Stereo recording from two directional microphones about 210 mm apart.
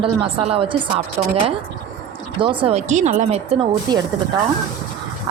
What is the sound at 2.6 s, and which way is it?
Speech, 35° right (ahead or behind).